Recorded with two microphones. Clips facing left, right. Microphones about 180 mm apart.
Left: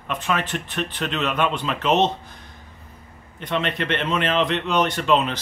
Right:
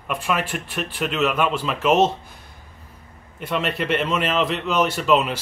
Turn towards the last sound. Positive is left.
turn(degrees=-5)  # may be behind; listen again after turning